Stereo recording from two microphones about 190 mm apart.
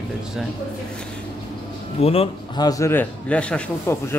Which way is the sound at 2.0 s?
30° left (ahead or behind).